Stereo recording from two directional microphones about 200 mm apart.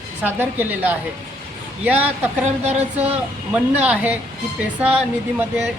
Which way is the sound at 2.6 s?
30° right (ahead or behind).